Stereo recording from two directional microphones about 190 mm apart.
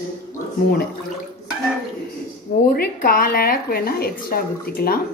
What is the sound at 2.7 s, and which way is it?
Speech, 50° left (ahead or behind).